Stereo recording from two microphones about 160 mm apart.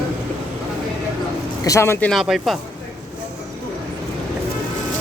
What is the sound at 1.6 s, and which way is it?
Speech, 20° left (ahead or behind).